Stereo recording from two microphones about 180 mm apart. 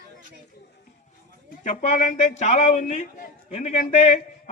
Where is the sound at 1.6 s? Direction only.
45° left (ahead or behind).